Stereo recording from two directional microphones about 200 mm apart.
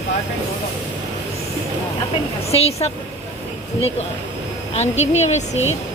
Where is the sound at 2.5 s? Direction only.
30° left (ahead or behind).